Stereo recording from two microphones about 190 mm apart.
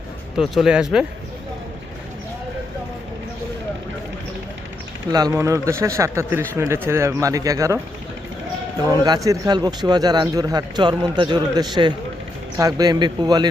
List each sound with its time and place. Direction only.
0.3 s speech: centre (ahead or behind)
5.1 s speech: 15° right (ahead or behind)
9.0 s speech: 20° right (ahead or behind)